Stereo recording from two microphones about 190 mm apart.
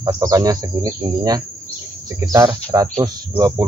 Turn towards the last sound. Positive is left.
turn(degrees=-20)  # may be behind; listen again after turning